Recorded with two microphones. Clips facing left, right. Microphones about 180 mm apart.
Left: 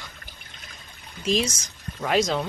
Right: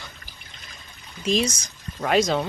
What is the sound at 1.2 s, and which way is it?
Speech, centre (ahead or behind).